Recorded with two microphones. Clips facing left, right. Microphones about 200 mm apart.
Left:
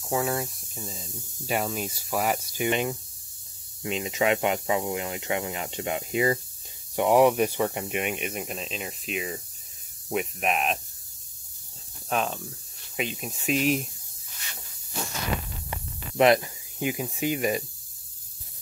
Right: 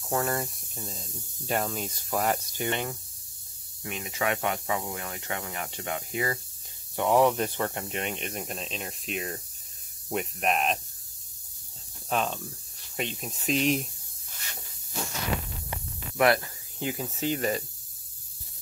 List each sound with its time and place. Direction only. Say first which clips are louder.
0.1 s speech: left 2 dB; centre (ahead or behind)
12.1 s speech: left 1 dB; 5° left (ahead or behind)
16.2 s speech: left 4 dB; 20° left (ahead or behind)